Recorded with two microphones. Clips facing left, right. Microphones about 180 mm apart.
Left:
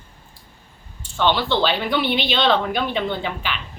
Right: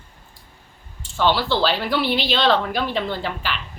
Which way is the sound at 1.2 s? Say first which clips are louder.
Even; 5° right (ahead or behind).